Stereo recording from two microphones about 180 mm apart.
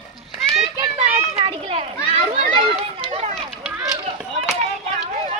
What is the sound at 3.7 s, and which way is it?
Chop, 20° right (ahead or behind).